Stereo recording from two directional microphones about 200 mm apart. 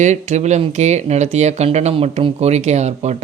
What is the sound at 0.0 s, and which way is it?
Speech, 35° right (ahead or behind).